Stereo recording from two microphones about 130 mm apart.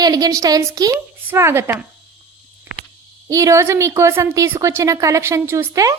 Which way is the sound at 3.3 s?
25° right (ahead or behind).